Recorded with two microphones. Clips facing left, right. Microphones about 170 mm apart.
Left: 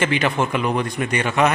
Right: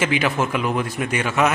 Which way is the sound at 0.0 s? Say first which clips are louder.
Left 1 dB; 5° right (ahead or behind).